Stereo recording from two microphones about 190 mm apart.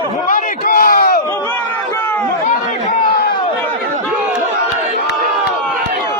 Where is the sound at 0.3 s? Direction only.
50° left (ahead or behind).